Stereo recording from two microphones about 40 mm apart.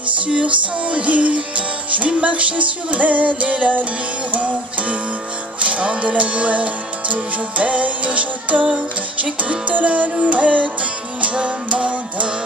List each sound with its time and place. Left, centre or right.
0.3 s music: right